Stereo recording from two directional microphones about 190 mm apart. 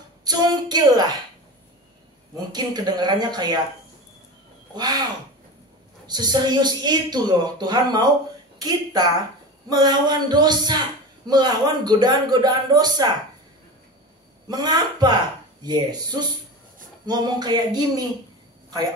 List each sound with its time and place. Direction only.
0.2 s a woman's voice: 20° right (ahead or behind)
2.5 s a woman's voice: 20° right (ahead or behind)
6.0 s a woman's voice: 20° right (ahead or behind)
14.5 s a woman's voice: 20° right (ahead or behind)